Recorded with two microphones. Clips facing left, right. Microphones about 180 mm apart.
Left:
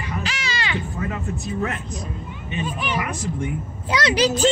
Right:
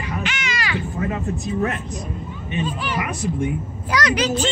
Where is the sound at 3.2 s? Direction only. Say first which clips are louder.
Right 4 dB; 15° right (ahead or behind).